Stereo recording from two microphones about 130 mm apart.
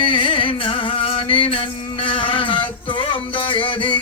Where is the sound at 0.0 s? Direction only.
40° left (ahead or behind).